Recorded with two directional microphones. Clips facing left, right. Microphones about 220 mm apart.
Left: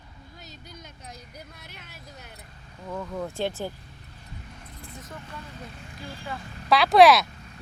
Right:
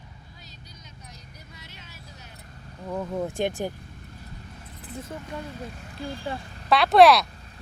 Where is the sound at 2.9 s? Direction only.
20° right (ahead or behind).